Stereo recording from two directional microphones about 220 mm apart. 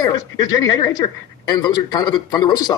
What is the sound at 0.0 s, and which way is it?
A man's voice, 20° left (ahead or behind).